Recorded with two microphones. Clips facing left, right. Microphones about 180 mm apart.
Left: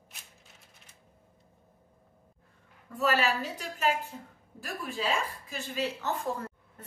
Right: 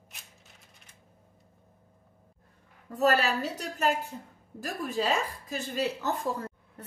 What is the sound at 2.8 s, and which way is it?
Speech, 40° right (ahead or behind).